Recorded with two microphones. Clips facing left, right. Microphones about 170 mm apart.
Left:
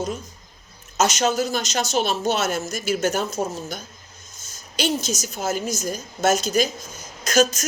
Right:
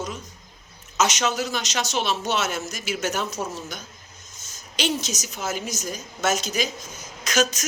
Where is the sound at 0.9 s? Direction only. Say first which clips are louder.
Left 3 dB; 50° left (ahead or behind).